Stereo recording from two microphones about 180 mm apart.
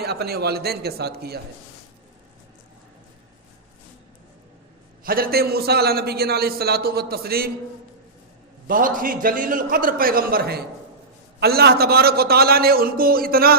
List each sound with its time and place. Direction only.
0.0 s a man's voice: 60° right (ahead or behind)
5.0 s a man's voice: 55° right (ahead or behind)
8.6 s a man's voice: 50° right (ahead or behind)